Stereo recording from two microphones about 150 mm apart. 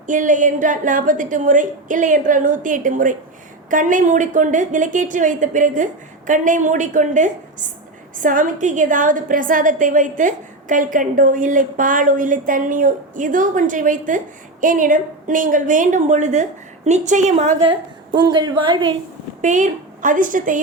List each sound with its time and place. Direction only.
0.1 s a woman's voice: 60° right (ahead or behind)
17.6 s a woman's voice: 30° right (ahead or behind)
19.4 s a woman's voice: 55° right (ahead or behind)